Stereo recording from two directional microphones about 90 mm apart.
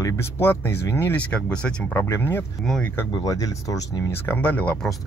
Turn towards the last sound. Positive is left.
turn(degrees=15)  # may be behind; listen again after turning